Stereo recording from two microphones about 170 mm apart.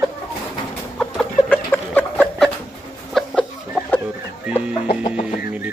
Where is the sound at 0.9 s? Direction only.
10° left (ahead or behind).